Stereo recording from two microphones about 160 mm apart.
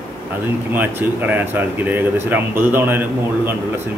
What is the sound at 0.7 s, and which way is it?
Speech, 10° right (ahead or behind).